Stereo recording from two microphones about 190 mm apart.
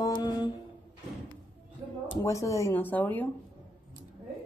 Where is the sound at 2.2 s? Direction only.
15° left (ahead or behind).